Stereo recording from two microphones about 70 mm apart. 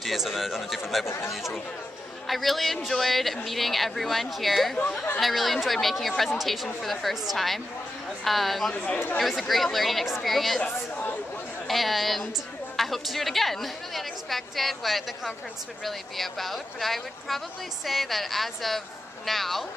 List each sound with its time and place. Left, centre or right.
0.0 s a woman's voice: centre
1.0 s speech: left
1.3 s a woman's voice: centre
8.7 s speech: centre
9.2 s a woman's voice: centre
10.6 s speech: left
11.6 s a woman's voice: centre